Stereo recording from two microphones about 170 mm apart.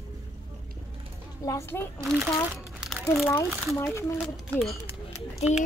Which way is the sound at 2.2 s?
10° right (ahead or behind).